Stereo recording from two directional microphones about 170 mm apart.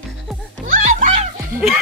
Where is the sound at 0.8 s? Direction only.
45° right (ahead or behind).